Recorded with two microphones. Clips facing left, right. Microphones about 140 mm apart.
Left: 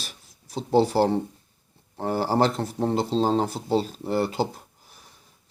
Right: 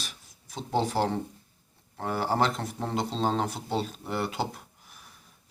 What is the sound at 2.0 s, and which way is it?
A man's voice, 30° left (ahead or behind).